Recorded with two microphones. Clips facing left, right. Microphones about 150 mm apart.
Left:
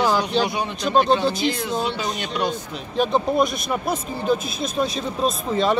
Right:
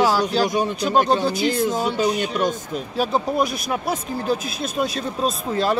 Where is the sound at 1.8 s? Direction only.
45° right (ahead or behind).